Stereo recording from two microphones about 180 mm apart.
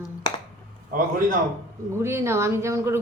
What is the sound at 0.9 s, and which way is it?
Speech, 50° right (ahead or behind).